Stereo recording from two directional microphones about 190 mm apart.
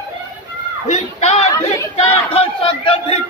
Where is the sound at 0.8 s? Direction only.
35° left (ahead or behind).